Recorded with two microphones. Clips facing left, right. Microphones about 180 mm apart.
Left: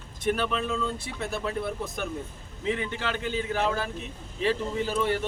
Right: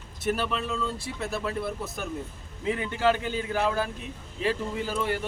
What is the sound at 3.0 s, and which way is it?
Speech, 45° right (ahead or behind).